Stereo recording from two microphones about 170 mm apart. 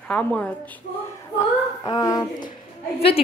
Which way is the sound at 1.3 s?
20° left (ahead or behind).